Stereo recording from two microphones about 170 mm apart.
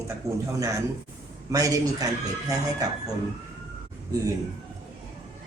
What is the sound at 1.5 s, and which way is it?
A man's voice, 20° right (ahead or behind).